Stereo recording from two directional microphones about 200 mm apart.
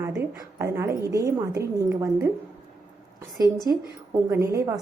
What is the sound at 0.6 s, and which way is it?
A woman's voice, 15° right (ahead or behind).